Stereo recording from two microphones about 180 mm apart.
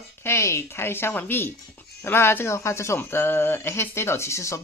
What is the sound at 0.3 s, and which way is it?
Speech, 15° left (ahead or behind).